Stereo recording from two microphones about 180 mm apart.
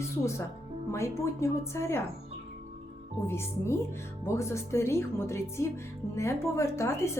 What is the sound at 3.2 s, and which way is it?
A woman's voice, 15° left (ahead or behind).